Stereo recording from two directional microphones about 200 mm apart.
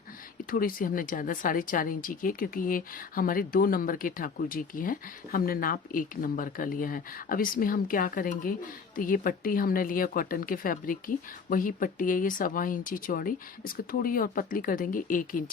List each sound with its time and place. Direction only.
0.5 s speech: 45° left (ahead or behind)